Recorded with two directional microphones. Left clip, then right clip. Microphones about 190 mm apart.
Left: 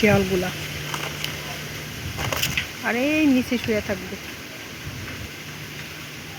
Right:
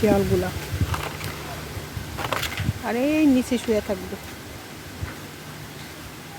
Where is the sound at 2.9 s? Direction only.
Centre (ahead or behind).